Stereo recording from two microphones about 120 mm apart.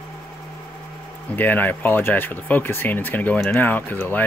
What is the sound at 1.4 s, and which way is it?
Speech, 15° left (ahead or behind).